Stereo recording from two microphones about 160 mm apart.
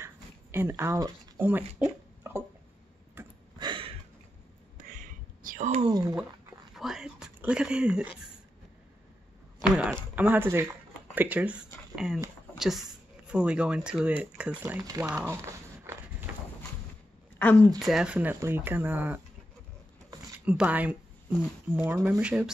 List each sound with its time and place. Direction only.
0.0 s a sound: 15° right (ahead or behind)
3.2 s tick-tock: 15° right (ahead or behind)
3.5 s a sound: 30° right (ahead or behind)
4.7 s whispering: 55° right (ahead or behind)
5.9 s speech: 25° right (ahead or behind)
6.7 s speech: centre (ahead or behind)
9.6 s speech: 5° right (ahead or behind)
14.8 s speech: 20° right (ahead or behind)
15.0 s a sound: 15° right (ahead or behind)
17.4 s a woman's voice: 10° left (ahead or behind)
17.7 s speech: centre (ahead or behind)
20.3 s speech: 10° right (ahead or behind)